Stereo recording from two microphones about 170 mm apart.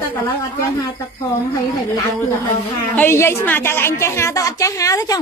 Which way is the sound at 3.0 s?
15° left (ahead or behind).